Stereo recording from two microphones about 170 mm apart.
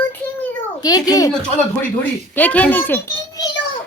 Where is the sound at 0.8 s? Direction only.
20° left (ahead or behind).